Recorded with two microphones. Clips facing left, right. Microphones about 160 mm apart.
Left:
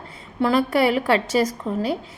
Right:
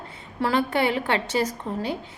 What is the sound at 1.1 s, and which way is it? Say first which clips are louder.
Speech: left 5 dB; 30° right (ahead or behind).